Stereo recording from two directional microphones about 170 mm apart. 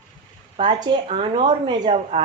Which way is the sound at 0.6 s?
30° right (ahead or behind).